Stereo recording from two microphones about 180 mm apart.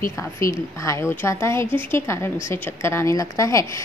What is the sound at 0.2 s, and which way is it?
Speech, 15° left (ahead or behind).